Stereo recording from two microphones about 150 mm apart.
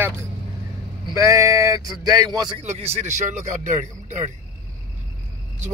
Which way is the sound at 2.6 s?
45° right (ahead or behind).